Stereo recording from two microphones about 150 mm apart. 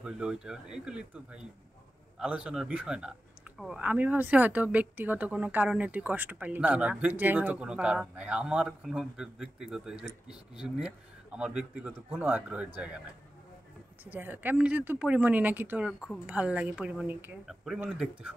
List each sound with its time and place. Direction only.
0.0 s speech: 5° right (ahead or behind)
14.0 s speech: 10° right (ahead or behind)